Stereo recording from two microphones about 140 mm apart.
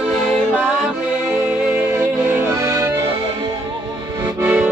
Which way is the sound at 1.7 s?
10° right (ahead or behind).